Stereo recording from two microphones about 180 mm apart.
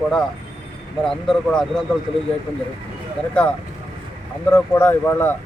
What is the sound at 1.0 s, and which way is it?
Speech, 5° left (ahead or behind).